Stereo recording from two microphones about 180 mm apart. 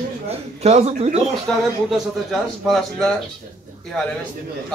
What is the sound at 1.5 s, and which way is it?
A man's voice, 5° left (ahead or behind).